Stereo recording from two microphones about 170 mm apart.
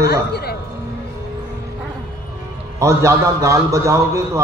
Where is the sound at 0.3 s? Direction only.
70° left (ahead or behind).